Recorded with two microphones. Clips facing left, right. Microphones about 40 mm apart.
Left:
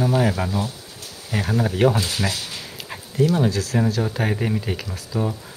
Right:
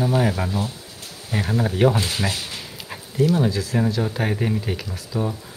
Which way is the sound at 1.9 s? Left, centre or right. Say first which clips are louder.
Even; right.